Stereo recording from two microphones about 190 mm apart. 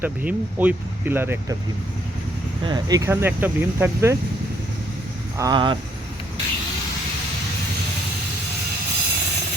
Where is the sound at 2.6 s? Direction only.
20° right (ahead or behind).